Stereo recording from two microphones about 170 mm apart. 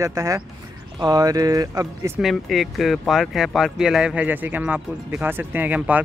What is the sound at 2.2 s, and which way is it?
Speech, centre (ahead or behind).